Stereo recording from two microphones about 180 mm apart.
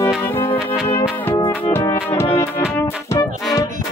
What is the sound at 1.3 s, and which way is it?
Music, 25° left (ahead or behind).